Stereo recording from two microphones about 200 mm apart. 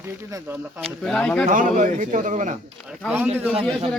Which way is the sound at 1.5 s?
40° right (ahead or behind).